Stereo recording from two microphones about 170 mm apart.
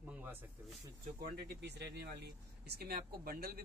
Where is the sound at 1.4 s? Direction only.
90° right.